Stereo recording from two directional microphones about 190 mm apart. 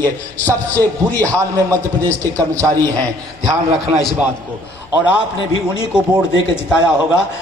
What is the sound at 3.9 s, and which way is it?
Speech, 5° right (ahead or behind).